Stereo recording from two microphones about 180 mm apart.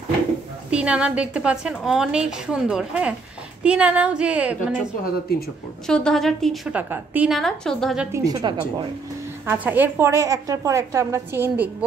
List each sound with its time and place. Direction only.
0.7 s a woman's voice: 5° right (ahead or behind)
5.9 s a woman's voice: 5° left (ahead or behind)
8.1 s a woman's voice: 20° right (ahead or behind)
9.5 s a woman's voice: 10° right (ahead or behind)